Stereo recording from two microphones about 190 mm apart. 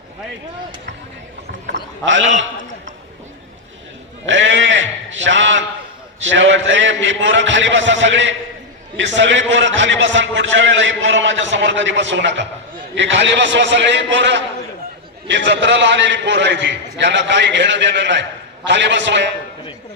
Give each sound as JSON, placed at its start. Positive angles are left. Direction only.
{"t": 1.6, "sound": "a man's voice", "side_deg": -75}
{"t": 4.3, "sound": "a man's voice", "side_deg": -75}